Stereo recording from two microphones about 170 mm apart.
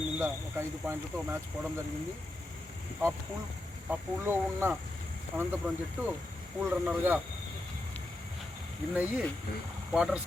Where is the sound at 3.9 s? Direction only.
10° right (ahead or behind).